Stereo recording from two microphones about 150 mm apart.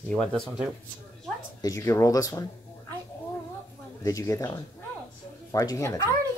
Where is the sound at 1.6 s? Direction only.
20° left (ahead or behind).